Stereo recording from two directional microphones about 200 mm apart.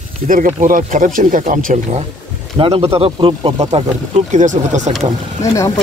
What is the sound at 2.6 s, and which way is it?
Speech, 30° right (ahead or behind).